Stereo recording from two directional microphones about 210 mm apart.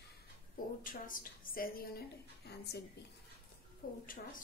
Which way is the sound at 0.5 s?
40° left (ahead or behind).